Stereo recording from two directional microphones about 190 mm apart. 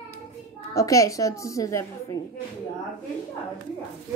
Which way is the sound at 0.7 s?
15° left (ahead or behind).